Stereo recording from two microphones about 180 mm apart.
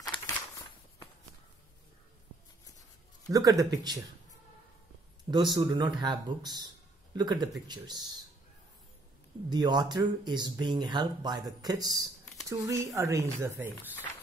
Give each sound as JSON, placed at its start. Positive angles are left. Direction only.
{"t": 0.0, "sound": "a sound", "side_deg": 20}
{"t": 3.3, "sound": "speech", "side_deg": -20}
{"t": 5.6, "sound": "speech", "side_deg": -20}
{"t": 9.5, "sound": "speech", "side_deg": -25}